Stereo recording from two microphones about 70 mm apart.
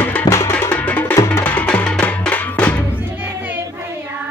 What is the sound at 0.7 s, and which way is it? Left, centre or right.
Music, left.